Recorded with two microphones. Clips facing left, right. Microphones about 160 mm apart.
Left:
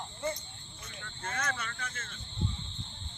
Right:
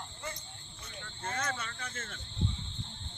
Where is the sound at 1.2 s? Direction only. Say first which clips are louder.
Even; 30° right (ahead or behind).